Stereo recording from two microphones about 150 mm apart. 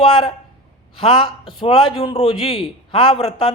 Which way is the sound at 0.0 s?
35° left (ahead or behind).